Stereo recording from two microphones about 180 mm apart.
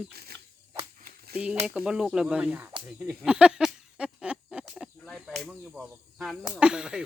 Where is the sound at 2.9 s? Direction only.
5° right (ahead or behind).